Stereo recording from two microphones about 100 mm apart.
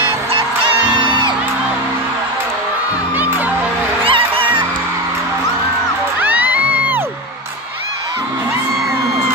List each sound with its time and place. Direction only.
0.3 s music: 60° right (ahead or behind)
3.2 s music: 15° right (ahead or behind)
4.0 s music: 60° right (ahead or behind)
6.2 s music: 15° right (ahead or behind)